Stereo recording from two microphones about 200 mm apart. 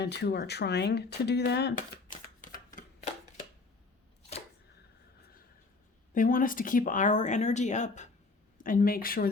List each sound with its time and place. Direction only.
0.0 s speech: 55° left (ahead or behind)
1.7 s shuffling cards: 40° left (ahead or behind)
6.1 s speech: 45° left (ahead or behind)